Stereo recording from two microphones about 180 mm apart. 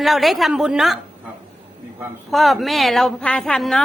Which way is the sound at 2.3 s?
Centre (ahead or behind).